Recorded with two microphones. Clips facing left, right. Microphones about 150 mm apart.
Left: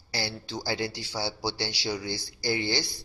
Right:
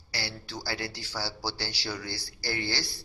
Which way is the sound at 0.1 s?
25° left (ahead or behind).